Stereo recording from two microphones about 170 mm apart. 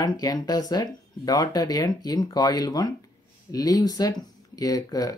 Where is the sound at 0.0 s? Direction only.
20° left (ahead or behind).